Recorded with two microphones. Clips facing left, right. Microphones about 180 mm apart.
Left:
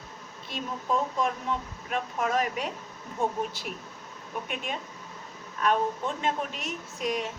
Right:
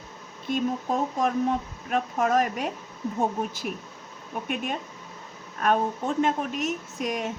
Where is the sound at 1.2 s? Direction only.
45° right (ahead or behind).